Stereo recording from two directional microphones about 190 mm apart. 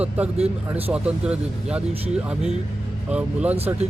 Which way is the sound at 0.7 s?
5° right (ahead or behind).